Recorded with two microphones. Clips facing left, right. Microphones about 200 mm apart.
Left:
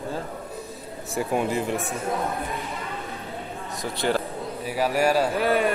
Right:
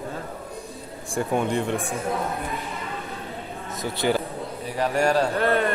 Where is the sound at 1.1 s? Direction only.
5° left (ahead or behind).